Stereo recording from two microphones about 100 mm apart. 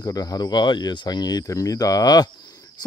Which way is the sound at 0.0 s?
35° left (ahead or behind).